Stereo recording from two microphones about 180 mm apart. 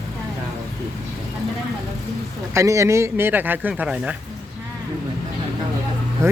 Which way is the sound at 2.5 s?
15° right (ahead or behind).